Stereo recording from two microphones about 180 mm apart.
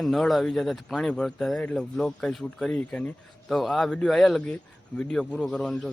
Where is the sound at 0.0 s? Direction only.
Centre (ahead or behind).